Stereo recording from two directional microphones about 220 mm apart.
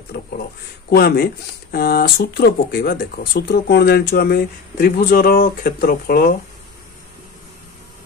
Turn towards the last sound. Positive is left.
turn(degrees=40)  # may be behind; listen again after turning